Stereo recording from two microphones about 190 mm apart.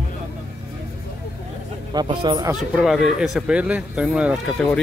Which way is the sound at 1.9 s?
25° right (ahead or behind).